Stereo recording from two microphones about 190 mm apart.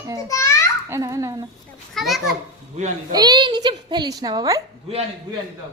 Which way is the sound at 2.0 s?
Centre (ahead or behind).